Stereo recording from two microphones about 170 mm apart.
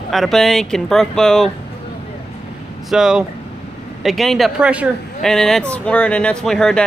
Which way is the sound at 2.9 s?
Centre (ahead or behind).